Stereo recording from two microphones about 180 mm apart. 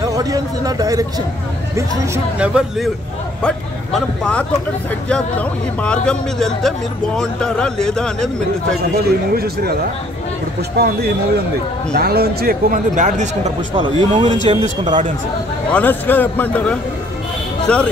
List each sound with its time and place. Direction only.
0.0 s speech: 20° right (ahead or behind)
1.8 s speech: 10° right (ahead or behind)
3.4 s speech: 5° left (ahead or behind)
9.3 s speech: 60° right (ahead or behind)
10.8 s speech: 60° right (ahead or behind); by 13.5 s 40° right (ahead or behind)
13.7 s speech: 25° right (ahead or behind)
15.7 s a man's voice: 10° left (ahead or behind)